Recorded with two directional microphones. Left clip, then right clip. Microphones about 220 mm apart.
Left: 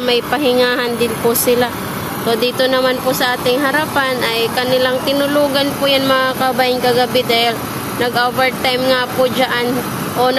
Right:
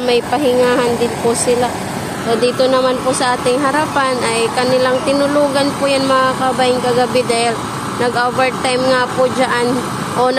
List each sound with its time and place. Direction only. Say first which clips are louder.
0.0 s speech: right 1 dB; 5° right (ahead or behind)
0.5 s speech: right 1 dB; 5° left (ahead or behind)
2.2 s speech: right 1 dB; 5° left (ahead or behind)